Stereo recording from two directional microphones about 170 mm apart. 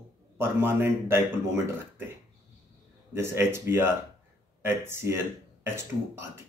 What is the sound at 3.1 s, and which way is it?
Speech, 15° right (ahead or behind).